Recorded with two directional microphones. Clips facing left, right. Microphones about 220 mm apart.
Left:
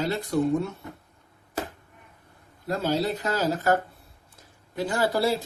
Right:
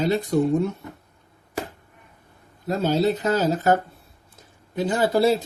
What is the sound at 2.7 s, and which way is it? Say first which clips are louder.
Speech: right 5 dB; 20° right (ahead or behind).